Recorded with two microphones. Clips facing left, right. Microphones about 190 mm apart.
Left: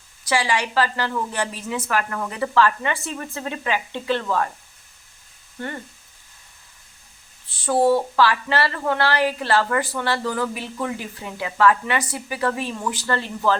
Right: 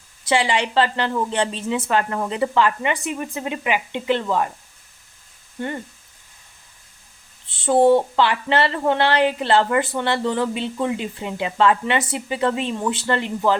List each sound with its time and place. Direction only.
0.3 s speech: 20° right (ahead or behind)
5.5 s speech: 20° right (ahead or behind)
7.4 s speech: 20° right (ahead or behind)